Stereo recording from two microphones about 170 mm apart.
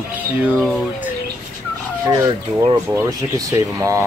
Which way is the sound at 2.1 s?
20° right (ahead or behind).